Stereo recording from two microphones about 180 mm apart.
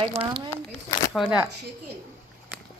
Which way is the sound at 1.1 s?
5° right (ahead or behind).